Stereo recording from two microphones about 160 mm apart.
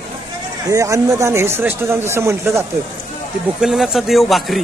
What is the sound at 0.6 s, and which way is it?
Speech, 20° right (ahead or behind).